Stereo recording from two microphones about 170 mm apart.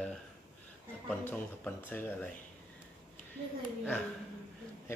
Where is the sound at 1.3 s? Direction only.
10° left (ahead or behind).